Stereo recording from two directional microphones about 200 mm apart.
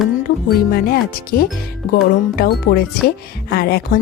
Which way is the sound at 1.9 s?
50° left (ahead or behind).